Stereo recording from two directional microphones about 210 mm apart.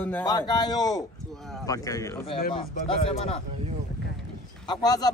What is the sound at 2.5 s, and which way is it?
Speech, 25° left (ahead or behind).